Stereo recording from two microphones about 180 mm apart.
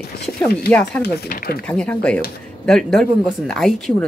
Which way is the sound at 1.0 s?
55° left (ahead or behind).